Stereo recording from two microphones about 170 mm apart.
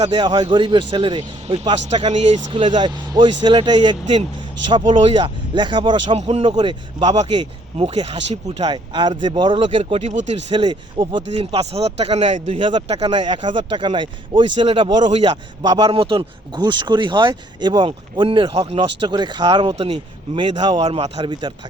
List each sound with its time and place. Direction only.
0.1 s a man's voice: 25° right (ahead or behind)
1.7 s speech: 40° right (ahead or behind)
2.5 s a man's voice: 30° right (ahead or behind); by 10.3 s 45° right (ahead or behind)
10.5 s a man's voice: 30° right (ahead or behind)